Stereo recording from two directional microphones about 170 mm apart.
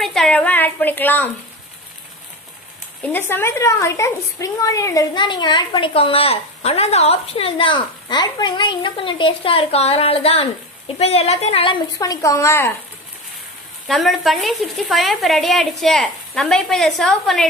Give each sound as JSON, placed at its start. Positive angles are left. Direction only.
{"t": 0.0, "sound": "a woman's voice", "side_deg": 0}
{"t": 3.0, "sound": "a woman's voice", "side_deg": 10}
{"t": 13.8, "sound": "speech", "side_deg": 0}